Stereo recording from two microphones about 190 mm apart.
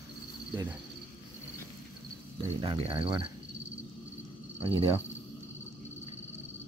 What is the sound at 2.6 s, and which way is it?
Speech, 30° right (ahead or behind).